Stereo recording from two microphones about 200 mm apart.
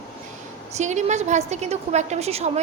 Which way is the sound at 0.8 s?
35° right (ahead or behind).